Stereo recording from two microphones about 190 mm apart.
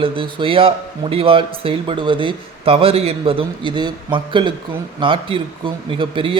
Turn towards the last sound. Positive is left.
turn(degrees=-25)  # may be behind; listen again after turning